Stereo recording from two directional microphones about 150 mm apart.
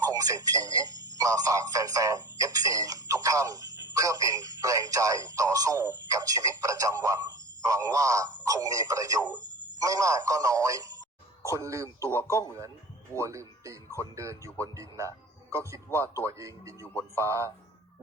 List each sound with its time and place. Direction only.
0.1 s speech: 25° right (ahead or behind)
12.1 s a man's voice: 15° left (ahead or behind)
13.1 s speech: 20° right (ahead or behind)
15.9 s a man's voice: 15° left (ahead or behind)
16.2 s speech: 20° right (ahead or behind)
16.8 s a man's voice: 10° left (ahead or behind)
17.2 s speech: 20° right (ahead or behind)